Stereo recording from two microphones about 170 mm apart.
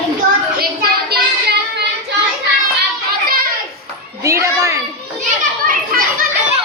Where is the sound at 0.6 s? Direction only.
65° right (ahead or behind).